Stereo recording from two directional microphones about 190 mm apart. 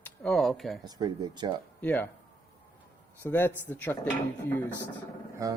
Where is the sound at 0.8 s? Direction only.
20° right (ahead or behind).